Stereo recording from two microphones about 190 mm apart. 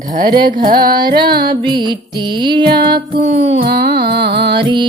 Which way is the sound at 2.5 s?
55° right (ahead or behind).